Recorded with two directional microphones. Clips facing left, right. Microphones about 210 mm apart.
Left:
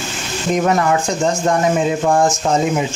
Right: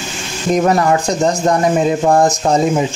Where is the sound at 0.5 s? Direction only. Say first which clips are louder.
Right 3 dB; 35° right (ahead or behind).